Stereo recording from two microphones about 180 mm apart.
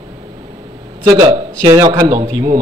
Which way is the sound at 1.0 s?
20° right (ahead or behind).